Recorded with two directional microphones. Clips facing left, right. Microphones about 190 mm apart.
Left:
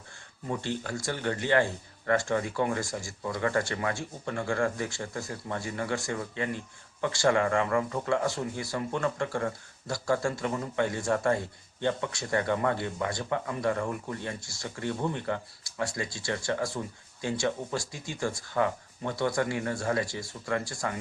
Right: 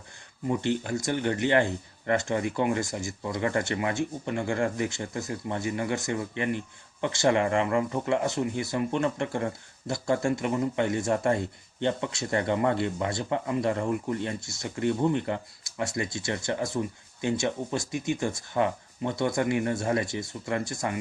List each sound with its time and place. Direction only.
0.4 s speech: 20° right (ahead or behind)